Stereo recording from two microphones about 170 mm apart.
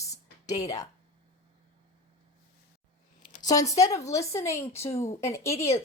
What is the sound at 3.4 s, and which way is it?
Speech, 20° left (ahead or behind).